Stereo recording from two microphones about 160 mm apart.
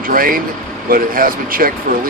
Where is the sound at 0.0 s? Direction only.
60° right (ahead or behind).